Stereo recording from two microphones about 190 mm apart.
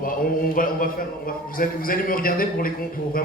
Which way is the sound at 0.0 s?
45° left (ahead or behind).